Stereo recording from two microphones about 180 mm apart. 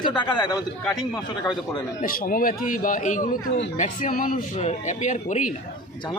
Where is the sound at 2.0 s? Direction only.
50° left (ahead or behind).